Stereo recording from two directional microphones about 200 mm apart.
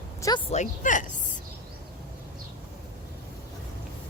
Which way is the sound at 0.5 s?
40° left (ahead or behind).